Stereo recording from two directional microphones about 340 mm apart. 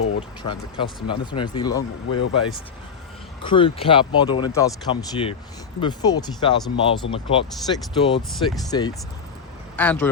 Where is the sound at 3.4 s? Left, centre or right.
Centre.